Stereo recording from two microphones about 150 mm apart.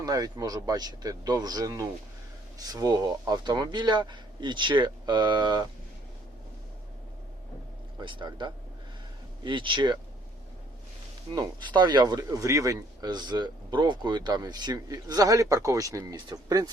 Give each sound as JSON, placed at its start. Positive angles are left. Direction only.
{"t": 0.0, "sound": "speech", "side_deg": -25}
{"t": 7.9, "sound": "speech", "side_deg": -30}
{"t": 11.3, "sound": "speech", "side_deg": -30}